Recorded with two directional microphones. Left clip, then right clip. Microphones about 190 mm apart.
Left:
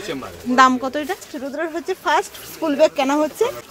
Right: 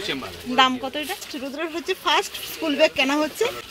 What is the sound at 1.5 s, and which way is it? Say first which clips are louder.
Speech: left 3 dB; 10° left (ahead or behind).